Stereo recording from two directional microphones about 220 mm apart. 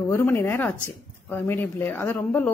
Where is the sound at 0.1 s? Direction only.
10° left (ahead or behind).